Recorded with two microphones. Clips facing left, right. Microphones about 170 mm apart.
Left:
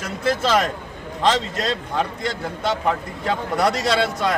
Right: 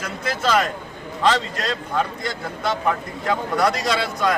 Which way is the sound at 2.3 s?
30° left (ahead or behind).